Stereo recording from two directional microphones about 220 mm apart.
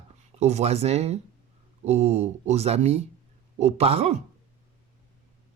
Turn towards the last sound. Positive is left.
turn(degrees=-30)  # may be behind; listen again after turning